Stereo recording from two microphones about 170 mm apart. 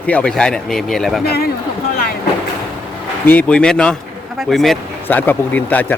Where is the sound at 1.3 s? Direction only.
65° left (ahead or behind).